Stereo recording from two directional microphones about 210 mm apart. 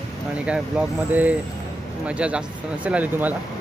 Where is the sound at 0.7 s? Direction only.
5° right (ahead or behind).